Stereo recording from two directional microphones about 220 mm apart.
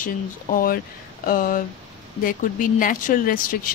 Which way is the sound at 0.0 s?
40° left (ahead or behind).